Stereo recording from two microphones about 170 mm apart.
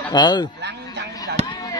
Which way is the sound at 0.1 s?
25° left (ahead or behind).